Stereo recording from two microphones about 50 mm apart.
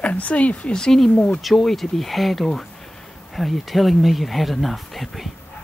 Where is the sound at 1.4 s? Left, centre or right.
Centre.